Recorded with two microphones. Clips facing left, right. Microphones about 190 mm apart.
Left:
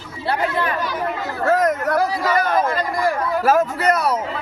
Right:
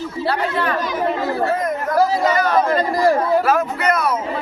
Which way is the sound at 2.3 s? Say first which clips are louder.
Right 1 dB; 50° left (ahead or behind).